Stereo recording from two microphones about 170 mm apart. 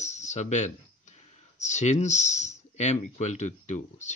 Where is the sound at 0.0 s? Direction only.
45° left (ahead or behind).